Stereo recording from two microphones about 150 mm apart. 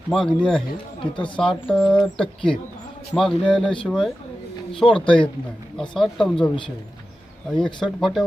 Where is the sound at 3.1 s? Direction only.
Centre (ahead or behind).